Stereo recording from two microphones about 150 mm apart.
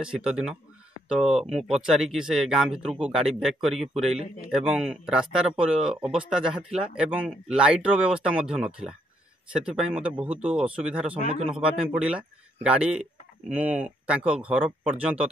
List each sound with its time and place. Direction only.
0.0 s speech: 5° right (ahead or behind)
11.3 s speech: 40° right (ahead or behind)
11.6 s speech: 5° right (ahead or behind)